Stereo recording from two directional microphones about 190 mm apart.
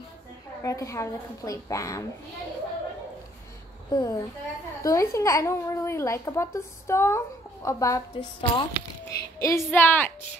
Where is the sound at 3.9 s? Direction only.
20° left (ahead or behind).